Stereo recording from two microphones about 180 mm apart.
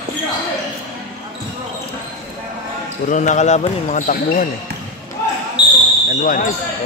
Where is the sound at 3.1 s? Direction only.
40° left (ahead or behind).